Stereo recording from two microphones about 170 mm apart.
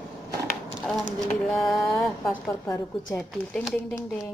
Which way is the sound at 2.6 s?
20° left (ahead or behind).